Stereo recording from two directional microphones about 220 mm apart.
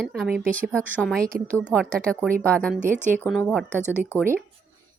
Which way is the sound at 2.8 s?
35° right (ahead or behind).